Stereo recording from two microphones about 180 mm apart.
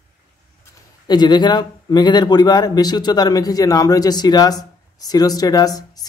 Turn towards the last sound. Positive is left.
turn(degrees=20)  # may be behind; listen again after turning